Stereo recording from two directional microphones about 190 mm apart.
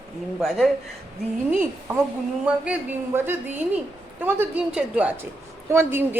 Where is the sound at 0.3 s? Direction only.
Centre (ahead or behind).